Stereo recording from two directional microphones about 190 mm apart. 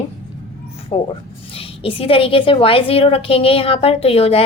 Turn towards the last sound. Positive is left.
turn(degrees=30)  # may be behind; listen again after turning